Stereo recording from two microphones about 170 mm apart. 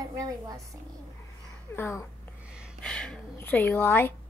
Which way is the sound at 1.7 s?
15° left (ahead or behind).